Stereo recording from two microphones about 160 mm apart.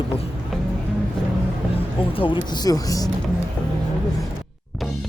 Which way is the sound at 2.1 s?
30° left (ahead or behind).